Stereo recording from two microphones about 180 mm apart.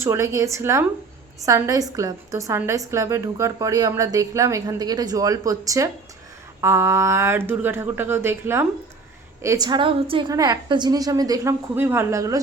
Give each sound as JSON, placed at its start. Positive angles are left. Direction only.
{"t": 0.0, "sound": "a woman's voice", "side_deg": -15}